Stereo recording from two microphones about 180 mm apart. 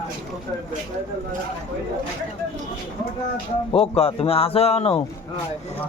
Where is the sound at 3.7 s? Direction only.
35° left (ahead or behind).